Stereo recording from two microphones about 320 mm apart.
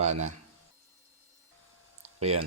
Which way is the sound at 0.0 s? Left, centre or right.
Right.